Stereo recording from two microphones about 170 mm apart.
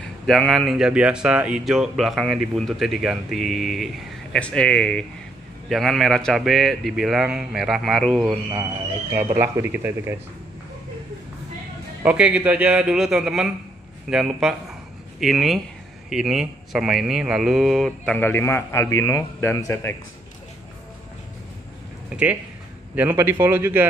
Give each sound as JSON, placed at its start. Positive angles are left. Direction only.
{"t": 0.0, "sound": "speech", "side_deg": 5}
{"t": 9.4, "sound": "a man's voice", "side_deg": -15}
{"t": 12.0, "sound": "speech", "side_deg": -5}
{"t": 22.1, "sound": "a man's voice", "side_deg": -10}